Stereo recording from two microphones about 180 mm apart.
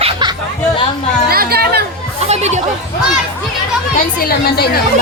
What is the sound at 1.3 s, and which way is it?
Speech, 60° right (ahead or behind).